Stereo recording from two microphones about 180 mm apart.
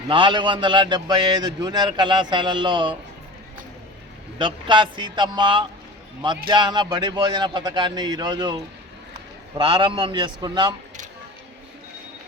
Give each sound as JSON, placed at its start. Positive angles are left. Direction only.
{"t": 0.1, "sound": "speech", "side_deg": -25}
{"t": 4.4, "sound": "speech", "side_deg": -25}